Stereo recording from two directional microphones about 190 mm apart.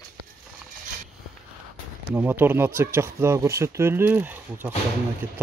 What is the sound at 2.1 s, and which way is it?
Speech, 10° right (ahead or behind).